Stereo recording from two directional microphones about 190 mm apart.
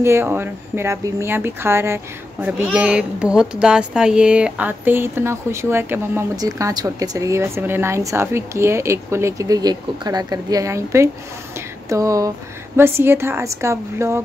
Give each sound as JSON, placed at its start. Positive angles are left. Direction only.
{"t": 0.0, "sound": "a child's voice", "side_deg": -15}
{"t": 11.5, "sound": "a sound", "side_deg": -15}
{"t": 12.7, "sound": "a child's voice", "side_deg": -10}